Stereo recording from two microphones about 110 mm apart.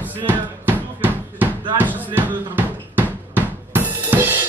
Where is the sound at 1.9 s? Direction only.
15° right (ahead or behind).